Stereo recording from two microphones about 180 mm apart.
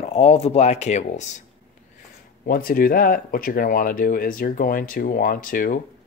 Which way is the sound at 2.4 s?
55° left (ahead or behind).